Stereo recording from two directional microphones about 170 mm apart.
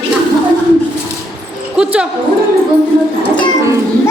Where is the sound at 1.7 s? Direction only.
5° right (ahead or behind).